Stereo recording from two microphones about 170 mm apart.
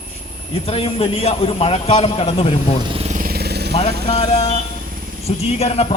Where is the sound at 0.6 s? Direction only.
35° left (ahead or behind).